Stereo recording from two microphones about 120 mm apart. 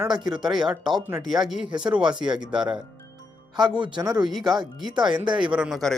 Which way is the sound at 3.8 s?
35° right (ahead or behind).